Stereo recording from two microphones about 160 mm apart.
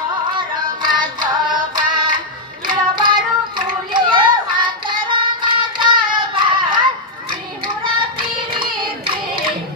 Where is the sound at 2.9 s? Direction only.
30° right (ahead or behind).